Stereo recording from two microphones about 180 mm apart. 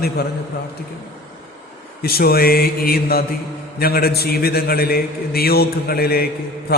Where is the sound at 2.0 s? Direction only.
60° left (ahead or behind).